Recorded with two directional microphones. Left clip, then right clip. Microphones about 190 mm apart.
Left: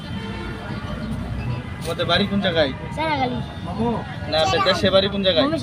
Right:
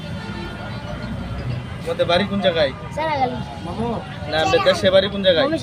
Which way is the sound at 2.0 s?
30° right (ahead or behind).